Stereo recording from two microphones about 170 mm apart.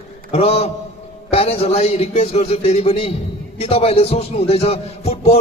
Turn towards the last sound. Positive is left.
turn(degrees=35)  # may be behind; listen again after turning